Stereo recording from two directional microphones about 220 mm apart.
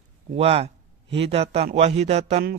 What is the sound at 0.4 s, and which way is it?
A man's voice, 25° right (ahead or behind).